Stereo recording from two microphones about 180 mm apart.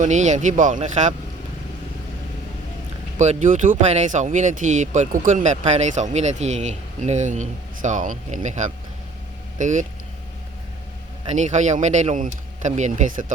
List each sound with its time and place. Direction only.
0.0 s speech: 40° right (ahead or behind)
3.2 s speech: 40° right (ahead or behind)
11.3 s speech: 40° right (ahead or behind)